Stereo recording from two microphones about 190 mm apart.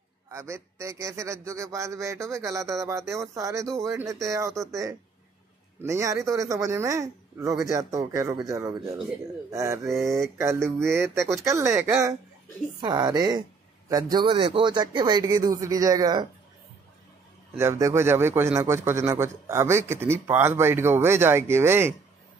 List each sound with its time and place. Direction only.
0.3 s a man's voice: 15° right (ahead or behind)
17.6 s a man's voice: 15° right (ahead or behind)